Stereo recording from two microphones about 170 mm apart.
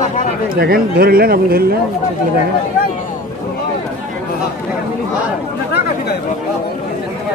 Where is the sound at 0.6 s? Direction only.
60° right (ahead or behind).